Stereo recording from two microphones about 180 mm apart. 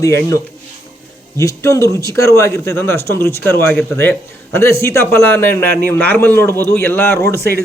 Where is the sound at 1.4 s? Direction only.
15° left (ahead or behind).